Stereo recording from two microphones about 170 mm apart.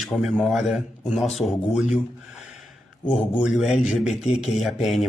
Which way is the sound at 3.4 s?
Centre (ahead or behind).